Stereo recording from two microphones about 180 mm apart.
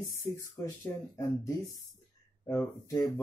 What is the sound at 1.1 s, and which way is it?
Speech, 15° left (ahead or behind).